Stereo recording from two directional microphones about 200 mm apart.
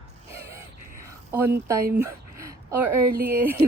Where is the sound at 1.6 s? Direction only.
15° right (ahead or behind).